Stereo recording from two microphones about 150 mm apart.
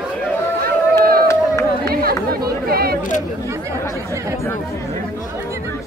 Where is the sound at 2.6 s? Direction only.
90° right.